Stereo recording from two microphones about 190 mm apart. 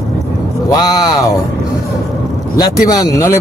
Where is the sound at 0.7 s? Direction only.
20° left (ahead or behind).